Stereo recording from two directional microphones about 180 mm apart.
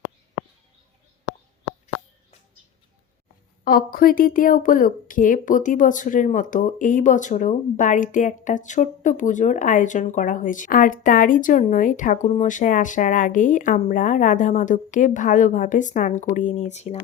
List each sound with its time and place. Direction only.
3.6 s speech: 55° left (ahead or behind); by 17.0 s 40° left (ahead or behind)